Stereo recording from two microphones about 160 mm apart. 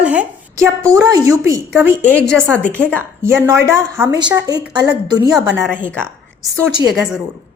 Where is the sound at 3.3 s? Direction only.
15° right (ahead or behind).